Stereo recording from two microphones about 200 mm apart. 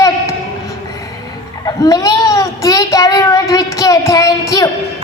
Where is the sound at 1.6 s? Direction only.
15° left (ahead or behind).